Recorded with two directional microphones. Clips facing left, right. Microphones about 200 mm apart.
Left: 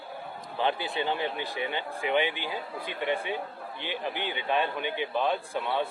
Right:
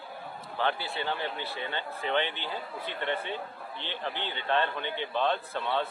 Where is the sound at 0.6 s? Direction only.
15° left (ahead or behind).